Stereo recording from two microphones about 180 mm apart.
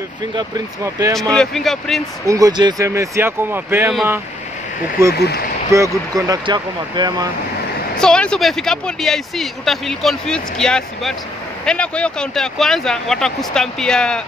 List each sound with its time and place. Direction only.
0.4 s speech: 20° right (ahead or behind)
1.3 s speech: centre (ahead or behind)
2.2 s speech: 20° right (ahead or behind)
5.1 s speech: 65° left (ahead or behind)
5.7 s speech: 15° right (ahead or behind)
8.0 s speech: 5° left (ahead or behind)